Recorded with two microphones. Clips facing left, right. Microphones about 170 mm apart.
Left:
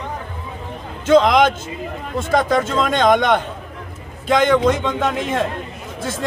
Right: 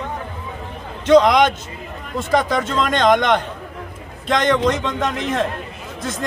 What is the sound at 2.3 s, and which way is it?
Speech, 5° left (ahead or behind).